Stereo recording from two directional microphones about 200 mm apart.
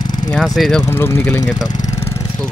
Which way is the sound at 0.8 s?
10° left (ahead or behind).